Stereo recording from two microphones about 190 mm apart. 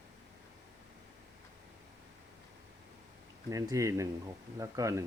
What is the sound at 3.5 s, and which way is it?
Speech, 15° right (ahead or behind).